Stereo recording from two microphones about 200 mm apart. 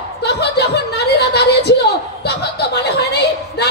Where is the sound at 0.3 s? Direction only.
55° left (ahead or behind).